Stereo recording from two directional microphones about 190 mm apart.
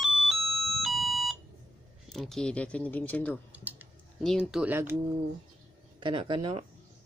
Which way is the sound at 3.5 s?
10° right (ahead or behind).